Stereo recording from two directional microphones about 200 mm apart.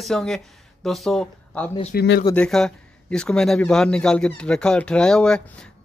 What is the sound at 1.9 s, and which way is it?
Speech, 55° left (ahead or behind).